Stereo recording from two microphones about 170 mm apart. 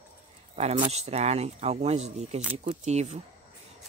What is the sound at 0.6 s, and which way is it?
Speech, 40° right (ahead or behind).